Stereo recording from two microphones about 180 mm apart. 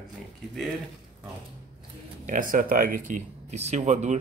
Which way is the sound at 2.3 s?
50° right (ahead or behind).